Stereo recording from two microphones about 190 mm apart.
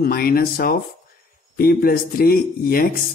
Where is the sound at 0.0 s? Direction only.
50° left (ahead or behind).